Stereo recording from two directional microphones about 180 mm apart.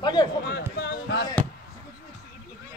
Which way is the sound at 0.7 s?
70° left (ahead or behind).